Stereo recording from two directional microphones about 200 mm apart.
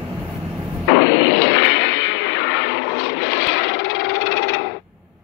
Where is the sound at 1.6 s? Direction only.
65° left (ahead or behind).